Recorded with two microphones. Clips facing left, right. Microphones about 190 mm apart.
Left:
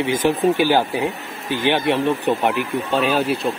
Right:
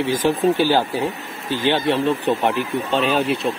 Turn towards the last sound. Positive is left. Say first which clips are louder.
# even
turn(degrees=5)  # may be behind; listen again after turning